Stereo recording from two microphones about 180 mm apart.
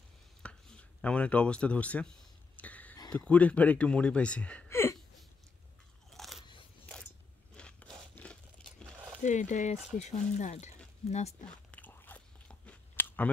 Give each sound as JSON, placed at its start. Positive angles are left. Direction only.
{"t": 0.4, "sound": "speech", "side_deg": 5}
{"t": 2.5, "sound": "a sound", "side_deg": 10}
{"t": 3.1, "sound": "speech", "side_deg": 5}
{"t": 6.0, "sound": "crunch", "side_deg": 0}
{"t": 7.5, "sound": "a sound", "side_deg": 5}
{"t": 9.2, "sound": "speech", "side_deg": 40}
{"t": 11.4, "sound": "biting", "side_deg": 10}